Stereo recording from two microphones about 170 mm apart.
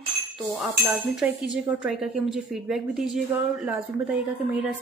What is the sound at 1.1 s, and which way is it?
Speech, 5° right (ahead or behind).